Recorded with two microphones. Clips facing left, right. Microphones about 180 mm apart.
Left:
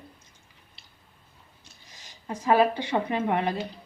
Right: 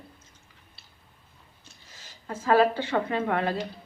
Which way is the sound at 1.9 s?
15° left (ahead or behind).